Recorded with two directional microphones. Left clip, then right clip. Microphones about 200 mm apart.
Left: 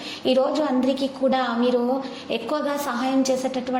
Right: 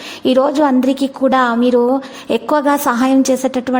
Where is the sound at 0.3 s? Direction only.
50° right (ahead or behind).